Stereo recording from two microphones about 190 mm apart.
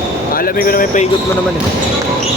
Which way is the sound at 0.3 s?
50° left (ahead or behind).